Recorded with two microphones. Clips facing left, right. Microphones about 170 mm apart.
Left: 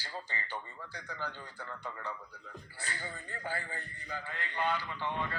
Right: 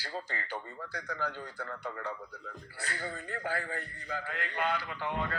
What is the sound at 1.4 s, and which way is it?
Speech, 60° right (ahead or behind).